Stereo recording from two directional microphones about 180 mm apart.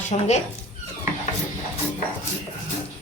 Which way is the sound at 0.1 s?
40° left (ahead or behind).